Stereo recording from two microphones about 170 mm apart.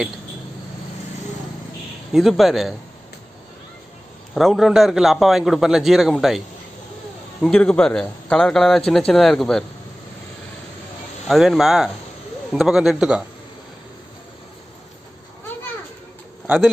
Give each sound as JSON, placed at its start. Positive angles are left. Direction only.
{"t": 2.1, "sound": "a man's voice", "side_deg": 0}
{"t": 4.3, "sound": "a man's voice", "side_deg": 0}
{"t": 7.4, "sound": "a man's voice", "side_deg": 5}
{"t": 11.2, "sound": "a man's voice", "side_deg": 0}
{"t": 16.4, "sound": "speech", "side_deg": 0}